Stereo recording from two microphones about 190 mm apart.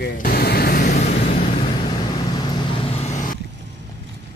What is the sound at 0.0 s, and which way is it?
Vehicle, 50° left (ahead or behind).